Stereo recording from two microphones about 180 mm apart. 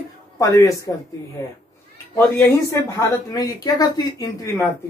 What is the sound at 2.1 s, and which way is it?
Speech, 15° left (ahead or behind).